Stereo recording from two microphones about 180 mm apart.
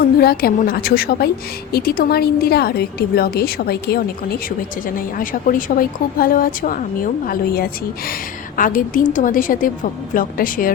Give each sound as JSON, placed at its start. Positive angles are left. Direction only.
{"t": 0.2, "sound": "a woman's voice", "side_deg": 55}
{"t": 8.5, "sound": "a woman's voice", "side_deg": 50}